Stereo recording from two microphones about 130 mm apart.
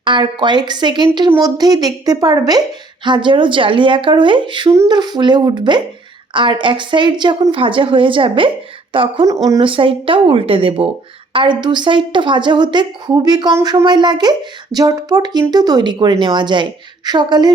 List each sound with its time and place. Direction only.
0.0 s a woman's voice: 40° right (ahead or behind)
9.2 s speech: 30° right (ahead or behind)
9.6 s a woman's voice: 40° right (ahead or behind)